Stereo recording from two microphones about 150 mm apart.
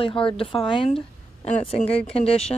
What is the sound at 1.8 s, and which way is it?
Speech, 40° left (ahead or behind).